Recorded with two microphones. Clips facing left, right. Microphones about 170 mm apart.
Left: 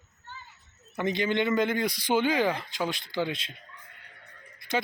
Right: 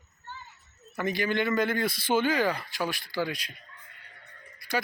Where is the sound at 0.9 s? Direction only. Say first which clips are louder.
Left 1 dB; 20° left (ahead or behind).